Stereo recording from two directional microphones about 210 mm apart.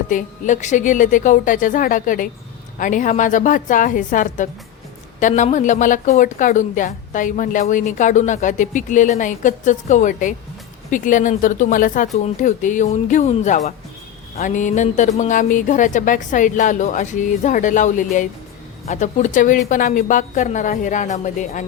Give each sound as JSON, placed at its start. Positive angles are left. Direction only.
{"t": 0.1, "sound": "a woman's voice", "side_deg": 40}